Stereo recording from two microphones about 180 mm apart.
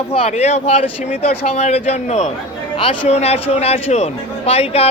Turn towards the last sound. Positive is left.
turn(degrees=35)  # may be behind; listen again after turning